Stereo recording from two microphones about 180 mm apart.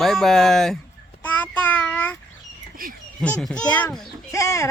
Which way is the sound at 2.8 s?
55° right (ahead or behind).